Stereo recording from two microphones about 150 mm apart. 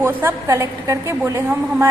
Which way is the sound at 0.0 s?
15° right (ahead or behind).